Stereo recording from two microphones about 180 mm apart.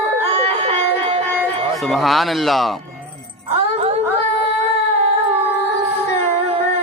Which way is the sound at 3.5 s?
35° right (ahead or behind).